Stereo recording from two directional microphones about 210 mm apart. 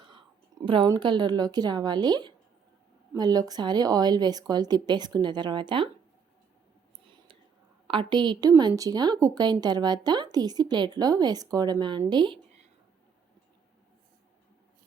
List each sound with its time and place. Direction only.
0.6 s a woman's voice: 25° right (ahead or behind)
7.0 s a sound: 25° right (ahead or behind)
7.9 s a woman's voice: 20° right (ahead or behind)